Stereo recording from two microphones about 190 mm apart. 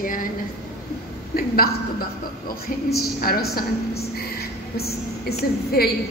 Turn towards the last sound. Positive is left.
turn(degrees=55)  # may be behind; listen again after turning